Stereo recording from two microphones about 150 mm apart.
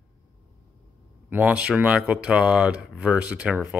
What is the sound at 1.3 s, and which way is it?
Speech, 10° right (ahead or behind).